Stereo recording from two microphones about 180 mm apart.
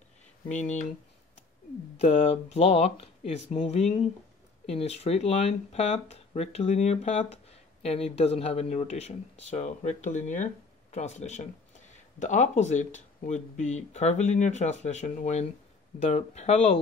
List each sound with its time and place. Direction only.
0.5 s speech: 40° left (ahead or behind)
2.0 s speech: 40° left (ahead or behind)